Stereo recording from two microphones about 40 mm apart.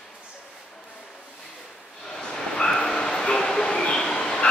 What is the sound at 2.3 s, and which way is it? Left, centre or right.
Bow-wow, centre.